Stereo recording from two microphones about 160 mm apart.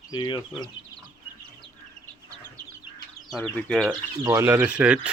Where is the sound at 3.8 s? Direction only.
20° right (ahead or behind).